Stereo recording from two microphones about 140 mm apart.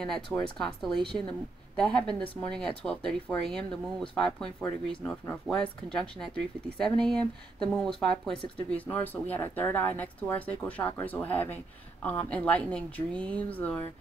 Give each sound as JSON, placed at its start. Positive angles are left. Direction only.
{"t": 0.0, "sound": "speech", "side_deg": 0}
{"t": 5.2, "sound": "speech", "side_deg": 20}
{"t": 5.9, "sound": "speech", "side_deg": 5}